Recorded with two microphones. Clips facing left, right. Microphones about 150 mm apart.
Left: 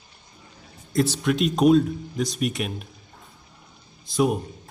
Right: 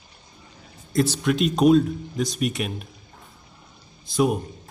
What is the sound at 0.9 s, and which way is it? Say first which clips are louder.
A man's voice: right 1 dB; centre (ahead or behind).